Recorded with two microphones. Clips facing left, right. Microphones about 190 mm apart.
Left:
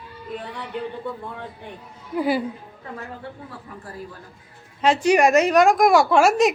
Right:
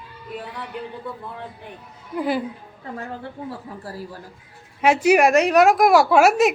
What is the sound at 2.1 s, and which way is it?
Speech, 5° left (ahead or behind).